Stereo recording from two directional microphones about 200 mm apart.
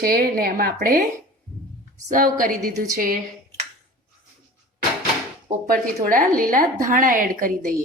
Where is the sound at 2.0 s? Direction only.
45° right (ahead or behind).